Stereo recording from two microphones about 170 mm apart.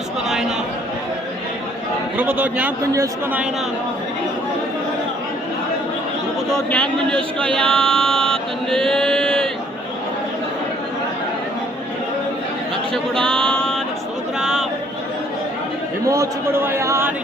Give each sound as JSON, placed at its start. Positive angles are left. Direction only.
{"t": 2.1, "sound": "a man's voice", "side_deg": -10}
{"t": 6.5, "sound": "a man's voice", "side_deg": 5}
{"t": 7.3, "sound": "chant", "side_deg": 5}
{"t": 12.9, "sound": "a sound", "side_deg": 5}
{"t": 16.0, "sound": "a man's voice", "side_deg": -15}